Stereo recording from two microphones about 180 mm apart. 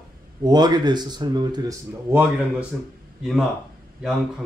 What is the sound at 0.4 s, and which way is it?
Speech, 25° right (ahead or behind).